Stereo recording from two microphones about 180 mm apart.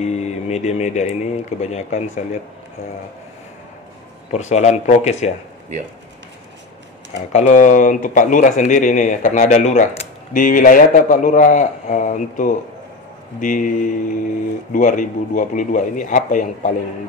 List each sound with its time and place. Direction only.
0.0 s speech: 40° left (ahead or behind)
4.3 s speech: 40° left (ahead or behind)
7.3 s speech: 45° left (ahead or behind)